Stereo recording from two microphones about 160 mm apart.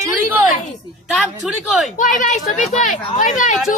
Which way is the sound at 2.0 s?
50° left (ahead or behind).